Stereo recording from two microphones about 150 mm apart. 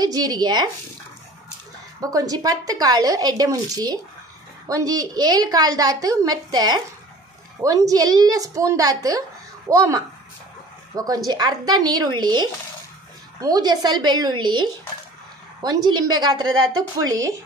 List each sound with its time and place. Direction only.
0.0 s a woman's voice: 25° right (ahead or behind)
2.0 s a woman's voice: 25° right (ahead or behind)
11.2 s a woman's voice: 25° right (ahead or behind)